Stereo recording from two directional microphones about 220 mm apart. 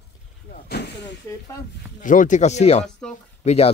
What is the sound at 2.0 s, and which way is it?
Speech, 35° left (ahead or behind).